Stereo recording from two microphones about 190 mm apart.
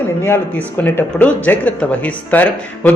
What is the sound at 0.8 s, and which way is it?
Speech, 10° left (ahead or behind).